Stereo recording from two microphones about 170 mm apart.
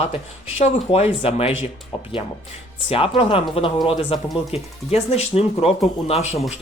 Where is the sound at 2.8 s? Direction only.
35° left (ahead or behind).